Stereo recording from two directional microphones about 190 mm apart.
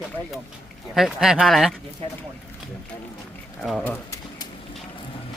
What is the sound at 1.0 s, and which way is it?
Speech, centre (ahead or behind).